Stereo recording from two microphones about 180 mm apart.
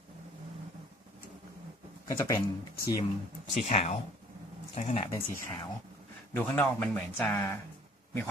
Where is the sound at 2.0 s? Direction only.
20° left (ahead or behind).